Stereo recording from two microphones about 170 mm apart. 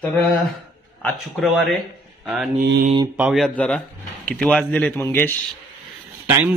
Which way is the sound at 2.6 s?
70° right (ahead or behind).